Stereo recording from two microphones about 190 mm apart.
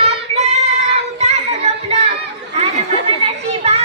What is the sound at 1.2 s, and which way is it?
Music, 35° right (ahead or behind).